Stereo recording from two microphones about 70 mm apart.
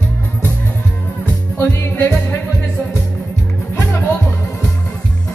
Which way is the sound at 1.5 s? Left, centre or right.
Left.